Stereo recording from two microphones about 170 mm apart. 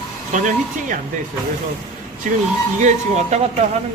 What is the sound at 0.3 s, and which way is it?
Speech, 50° right (ahead or behind).